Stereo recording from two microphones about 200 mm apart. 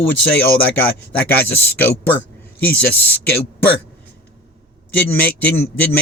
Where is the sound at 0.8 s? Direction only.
10° left (ahead or behind).